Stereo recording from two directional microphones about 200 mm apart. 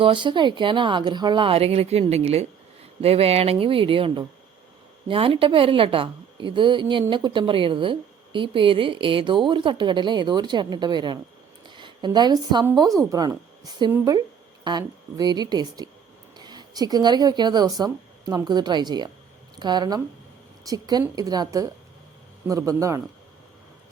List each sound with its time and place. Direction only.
0.0 s a woman's voice: 25° right (ahead or behind)